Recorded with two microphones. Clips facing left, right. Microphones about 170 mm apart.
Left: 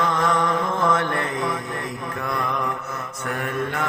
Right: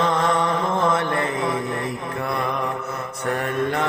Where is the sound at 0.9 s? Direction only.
25° right (ahead or behind).